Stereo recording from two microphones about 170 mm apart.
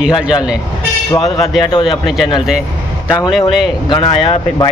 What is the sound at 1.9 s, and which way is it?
Speech, centre (ahead or behind).